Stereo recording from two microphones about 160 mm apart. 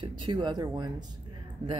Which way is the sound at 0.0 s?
30° right (ahead or behind).